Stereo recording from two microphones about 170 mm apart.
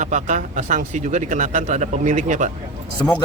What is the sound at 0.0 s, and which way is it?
Speech, 45° right (ahead or behind).